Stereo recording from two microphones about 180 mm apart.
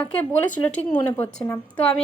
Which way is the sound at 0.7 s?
10° left (ahead or behind).